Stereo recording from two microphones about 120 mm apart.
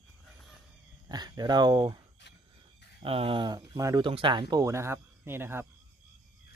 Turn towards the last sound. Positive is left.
turn(degrees=-20)  # may be behind; listen again after turning